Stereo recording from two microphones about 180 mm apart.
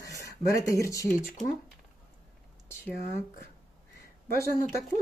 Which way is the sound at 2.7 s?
15° left (ahead or behind).